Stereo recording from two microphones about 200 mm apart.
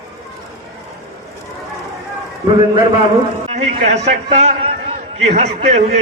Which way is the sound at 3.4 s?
30° right (ahead or behind).